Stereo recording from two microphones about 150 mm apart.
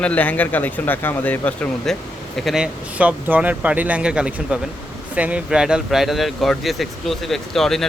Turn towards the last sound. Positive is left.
turn(degrees=0)  # may be behind; listen again after turning